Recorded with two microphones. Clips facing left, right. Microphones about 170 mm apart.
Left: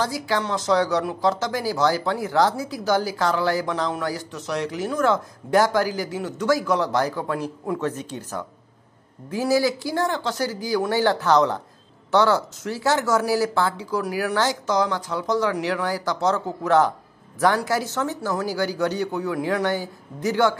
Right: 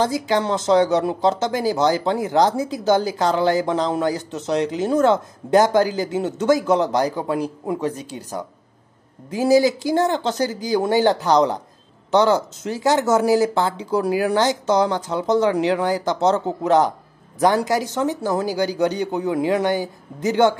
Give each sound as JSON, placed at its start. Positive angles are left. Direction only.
{"t": 0.0, "sound": "speech", "side_deg": -20}